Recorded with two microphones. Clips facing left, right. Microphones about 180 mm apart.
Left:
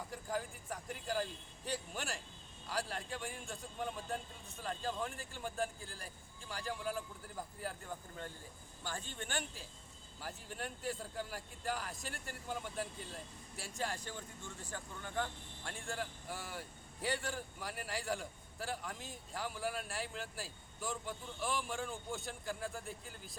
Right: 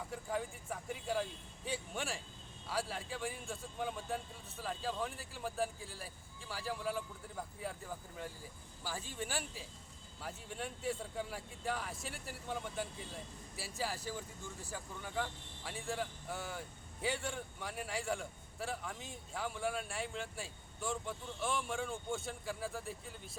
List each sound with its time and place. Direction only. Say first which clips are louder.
0.1 s speech: right 2 dB; centre (ahead or behind)